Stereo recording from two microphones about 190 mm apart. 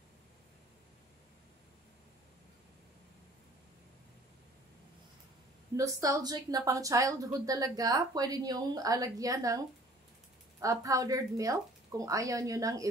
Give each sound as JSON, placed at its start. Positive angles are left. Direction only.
{"t": 5.8, "sound": "a woman's voice", "side_deg": -15}